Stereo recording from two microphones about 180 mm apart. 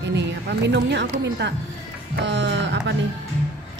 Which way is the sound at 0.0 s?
75° right (ahead or behind).